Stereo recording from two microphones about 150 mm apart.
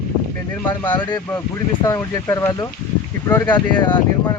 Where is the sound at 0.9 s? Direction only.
30° left (ahead or behind).